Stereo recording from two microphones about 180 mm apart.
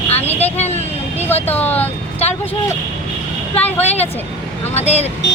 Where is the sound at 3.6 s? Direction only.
35° left (ahead or behind).